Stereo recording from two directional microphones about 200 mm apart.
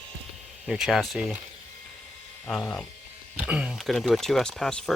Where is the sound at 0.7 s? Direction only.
Centre (ahead or behind).